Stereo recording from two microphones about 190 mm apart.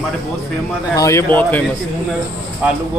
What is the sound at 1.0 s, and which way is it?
Speech, 15° left (ahead or behind).